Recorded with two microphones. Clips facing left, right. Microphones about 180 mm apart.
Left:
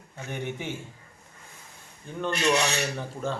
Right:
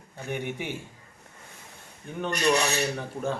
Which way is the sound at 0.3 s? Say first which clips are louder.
Right 2 dB; 15° right (ahead or behind).